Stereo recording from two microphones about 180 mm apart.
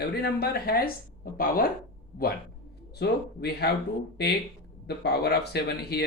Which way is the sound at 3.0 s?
65° left (ahead or behind).